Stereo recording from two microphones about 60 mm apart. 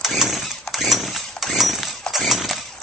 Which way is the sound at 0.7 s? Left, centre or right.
Centre.